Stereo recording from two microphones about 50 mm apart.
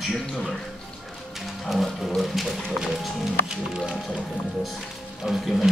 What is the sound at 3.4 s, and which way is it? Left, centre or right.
Speech, centre.